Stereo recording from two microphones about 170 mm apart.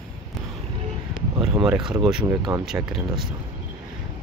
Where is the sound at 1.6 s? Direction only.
5° right (ahead or behind).